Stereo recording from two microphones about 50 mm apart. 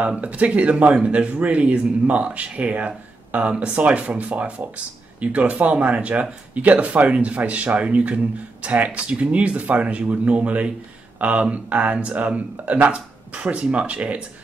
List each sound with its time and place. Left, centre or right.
0.0 s speech: right